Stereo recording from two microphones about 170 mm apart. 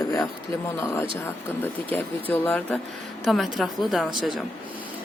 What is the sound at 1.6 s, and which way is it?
Speech, 10° left (ahead or behind).